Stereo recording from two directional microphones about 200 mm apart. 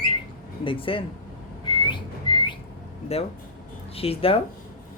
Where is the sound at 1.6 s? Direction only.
25° left (ahead or behind).